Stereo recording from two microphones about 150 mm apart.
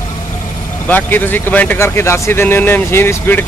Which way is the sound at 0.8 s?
15° left (ahead or behind).